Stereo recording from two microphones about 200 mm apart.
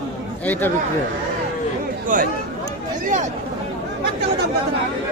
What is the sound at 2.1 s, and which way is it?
Speech, 40° right (ahead or behind).